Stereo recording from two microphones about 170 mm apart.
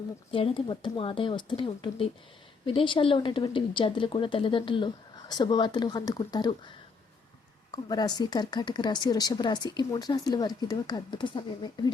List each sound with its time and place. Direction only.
0.3 s a woman's voice: 30° left (ahead or behind)
7.9 s a woman's voice: 25° left (ahead or behind)